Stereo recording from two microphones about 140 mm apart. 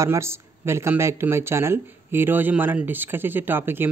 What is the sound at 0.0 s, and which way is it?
Speech, 20° right (ahead or behind).